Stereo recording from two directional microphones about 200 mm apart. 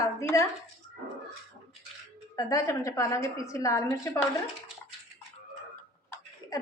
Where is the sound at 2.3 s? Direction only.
15° left (ahead or behind).